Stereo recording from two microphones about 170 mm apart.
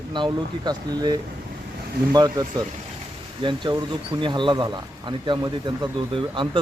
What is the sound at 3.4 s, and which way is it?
Speech, 25° right (ahead or behind).